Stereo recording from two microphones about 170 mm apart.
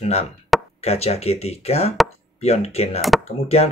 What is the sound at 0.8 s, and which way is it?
Speech, 40° left (ahead or behind).